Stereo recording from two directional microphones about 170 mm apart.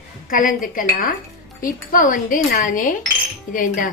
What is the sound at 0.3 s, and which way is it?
A woman's voice, 50° left (ahead or behind).